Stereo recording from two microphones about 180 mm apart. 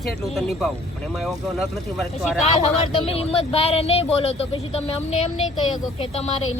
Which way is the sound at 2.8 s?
35° left (ahead or behind).